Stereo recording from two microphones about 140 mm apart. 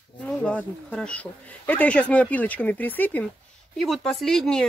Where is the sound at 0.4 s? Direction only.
10° left (ahead or behind).